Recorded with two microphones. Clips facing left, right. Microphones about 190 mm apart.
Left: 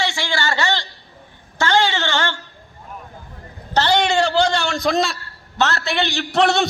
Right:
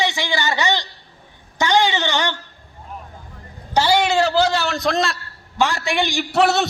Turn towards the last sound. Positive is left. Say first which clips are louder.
# even
turn(degrees=-5)  # may be behind; listen again after turning